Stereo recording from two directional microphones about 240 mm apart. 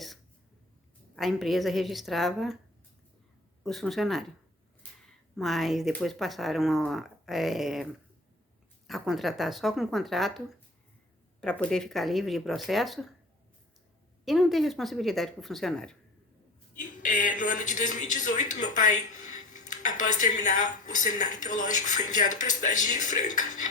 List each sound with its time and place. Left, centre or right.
1.1 s speech: centre
3.6 s speech: centre
8.9 s speech: centre
14.3 s speech: centre
16.7 s speech: left
20.0 s speech: left